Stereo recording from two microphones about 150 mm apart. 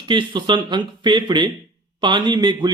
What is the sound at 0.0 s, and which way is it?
Speech, 30° right (ahead or behind).